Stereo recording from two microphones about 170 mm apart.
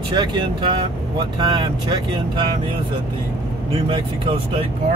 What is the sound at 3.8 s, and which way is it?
Speech, 30° right (ahead or behind).